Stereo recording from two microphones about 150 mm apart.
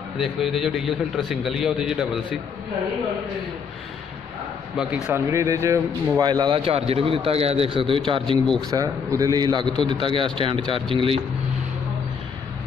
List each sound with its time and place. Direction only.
0.2 s a man's voice: centre (ahead or behind)
4.7 s speech: 5° right (ahead or behind); by 8.4 s 35° right (ahead or behind)
8.5 s a man's voice: 25° right (ahead or behind)